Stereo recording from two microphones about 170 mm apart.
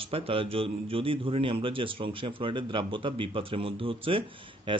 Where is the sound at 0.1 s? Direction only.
35° right (ahead or behind).